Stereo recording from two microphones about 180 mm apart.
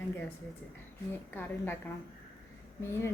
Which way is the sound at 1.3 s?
10° left (ahead or behind).